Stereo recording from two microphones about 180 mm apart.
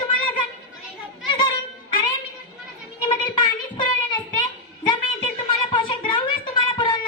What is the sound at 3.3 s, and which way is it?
Child singing, 25° left (ahead or behind).